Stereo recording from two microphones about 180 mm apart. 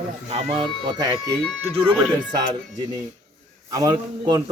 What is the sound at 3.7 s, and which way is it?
Speech, 20° right (ahead or behind).